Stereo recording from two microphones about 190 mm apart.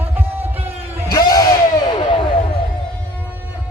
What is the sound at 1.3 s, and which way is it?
Crowd, 15° left (ahead or behind).